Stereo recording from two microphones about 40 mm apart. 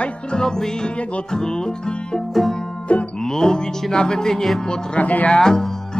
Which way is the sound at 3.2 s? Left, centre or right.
Centre.